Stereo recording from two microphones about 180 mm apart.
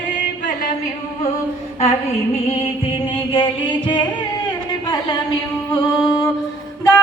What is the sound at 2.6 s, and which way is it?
Music, 30° left (ahead or behind).